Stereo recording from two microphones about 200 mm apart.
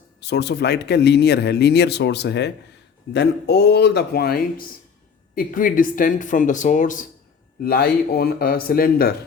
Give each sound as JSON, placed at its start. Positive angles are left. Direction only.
{"t": 0.2, "sound": "speech", "side_deg": 55}